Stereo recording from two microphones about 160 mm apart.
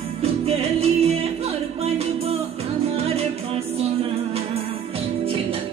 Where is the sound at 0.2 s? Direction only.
40° right (ahead or behind).